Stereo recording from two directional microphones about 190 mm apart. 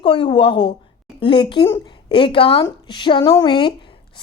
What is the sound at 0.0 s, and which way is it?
A woman's voice, 25° left (ahead or behind).